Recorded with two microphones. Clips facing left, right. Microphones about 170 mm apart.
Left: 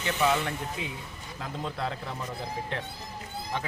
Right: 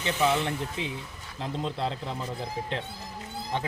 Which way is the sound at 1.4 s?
25° right (ahead or behind).